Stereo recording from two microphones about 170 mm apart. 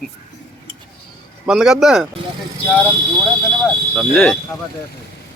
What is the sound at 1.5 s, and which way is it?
Speech, 5° right (ahead or behind).